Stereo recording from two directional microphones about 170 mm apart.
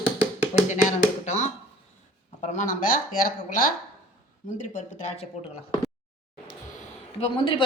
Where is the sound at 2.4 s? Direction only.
45° left (ahead or behind).